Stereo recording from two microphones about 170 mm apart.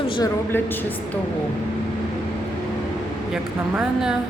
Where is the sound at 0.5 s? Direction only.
10° left (ahead or behind).